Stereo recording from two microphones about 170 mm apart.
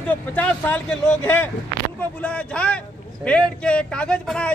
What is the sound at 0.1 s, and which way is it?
A man's voice, 10° left (ahead or behind).